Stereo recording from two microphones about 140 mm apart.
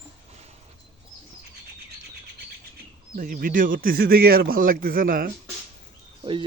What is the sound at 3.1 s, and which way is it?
A man's voice, 85° right.